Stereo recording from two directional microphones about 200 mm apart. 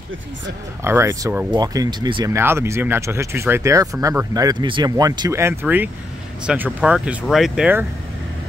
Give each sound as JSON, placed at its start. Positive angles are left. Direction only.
{"t": 0.8, "sound": "speech", "side_deg": -15}
{"t": 2.3, "sound": "speech", "side_deg": -10}